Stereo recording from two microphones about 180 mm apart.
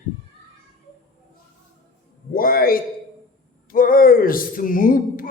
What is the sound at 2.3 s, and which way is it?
Speech, 55° left (ahead or behind).